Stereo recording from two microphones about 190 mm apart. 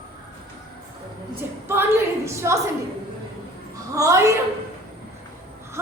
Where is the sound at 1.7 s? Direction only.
10° right (ahead or behind).